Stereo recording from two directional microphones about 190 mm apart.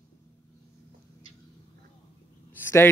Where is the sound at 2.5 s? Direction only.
10° left (ahead or behind).